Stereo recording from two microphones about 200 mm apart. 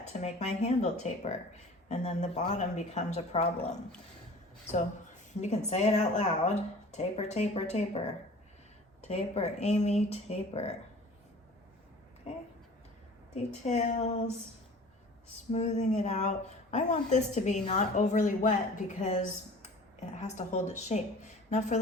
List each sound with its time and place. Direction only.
0.0 s speech: 35° left (ahead or behind)
13.3 s speech: 35° left (ahead or behind)
15.5 s speech: 35° left (ahead or behind)